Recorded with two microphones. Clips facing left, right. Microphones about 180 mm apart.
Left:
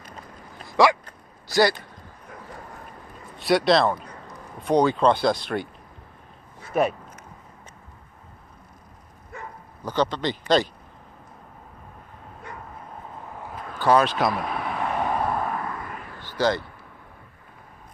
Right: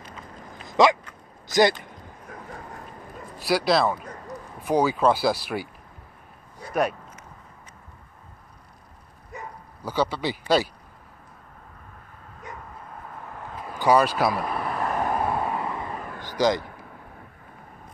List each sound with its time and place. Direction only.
0.7 s dog: 20° right (ahead or behind)
1.5 s speech: 20° right (ahead or behind)
3.3 s speech: centre (ahead or behind)
6.7 s speech: centre (ahead or behind)
9.3 s dog: 20° right (ahead or behind)
9.8 s speech: 10° right (ahead or behind)
13.7 s vehicle: 10° right (ahead or behind)
15.5 s vehicle: 20° right (ahead or behind)
16.0 s vehicle: 45° right (ahead or behind)
16.3 s speech: 15° right (ahead or behind)